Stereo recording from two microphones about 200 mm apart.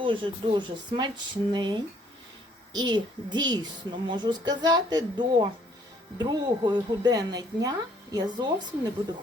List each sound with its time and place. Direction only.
0.0 s a woman's voice: 25° right (ahead or behind)